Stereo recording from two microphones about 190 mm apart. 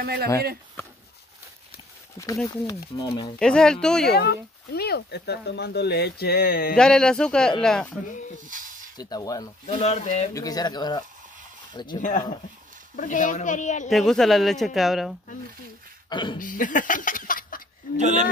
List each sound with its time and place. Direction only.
0.0 s speech: 50° right (ahead or behind)
2.4 s speech: 20° left (ahead or behind)
3.3 s speech: 5° left (ahead or behind)
4.1 s speech: 55° left (ahead or behind)
6.8 s speech: 5° left (ahead or behind)
8.9 s speech: 20° left (ahead or behind)
9.7 s speech: 35° left (ahead or behind)
10.3 s speech: 20° left (ahead or behind)
12.0 s speech: 40° left (ahead or behind)
13.8 s speech: centre (ahead or behind)
16.1 s speech: 25° left (ahead or behind)
16.3 s speech: 45° left (ahead or behind)
17.9 s speech: 40° right (ahead or behind)